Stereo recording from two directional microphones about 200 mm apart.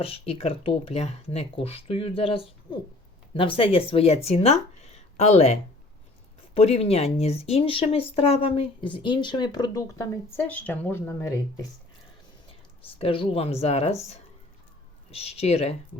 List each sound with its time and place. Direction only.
0.0 s speech: 30° left (ahead or behind)
13.0 s speech: 25° left (ahead or behind)